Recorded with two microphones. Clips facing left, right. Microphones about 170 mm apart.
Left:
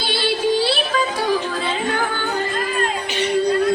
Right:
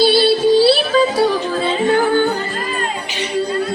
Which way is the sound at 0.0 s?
35° right (ahead or behind).